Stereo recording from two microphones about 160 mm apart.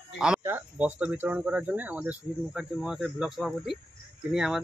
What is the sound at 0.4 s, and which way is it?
Speech, 15° right (ahead or behind).